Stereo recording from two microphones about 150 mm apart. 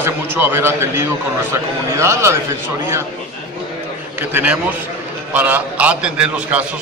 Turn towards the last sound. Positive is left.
turn(degrees=-10)  # may be behind; listen again after turning